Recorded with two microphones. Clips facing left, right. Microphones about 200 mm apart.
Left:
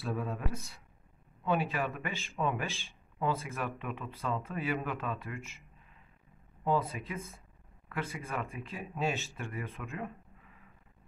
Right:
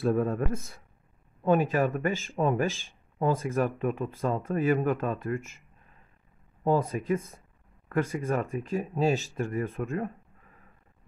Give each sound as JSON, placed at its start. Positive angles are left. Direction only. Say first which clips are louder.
{"t": 0.0, "sound": "speech", "louder": "right 10 dB", "side_deg": -50}
{"t": 6.6, "sound": "speech", "louder": "right 6 dB", "side_deg": -45}